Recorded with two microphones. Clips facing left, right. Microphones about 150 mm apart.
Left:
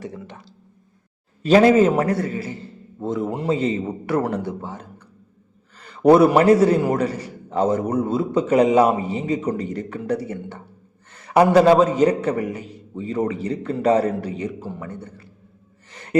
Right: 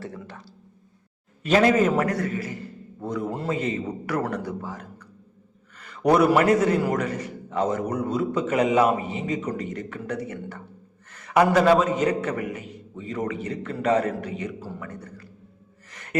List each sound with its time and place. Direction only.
0.0 s a man's voice: 15° left (ahead or behind)
1.4 s a man's voice: 30° left (ahead or behind)
15.9 s gasp: 30° left (ahead or behind)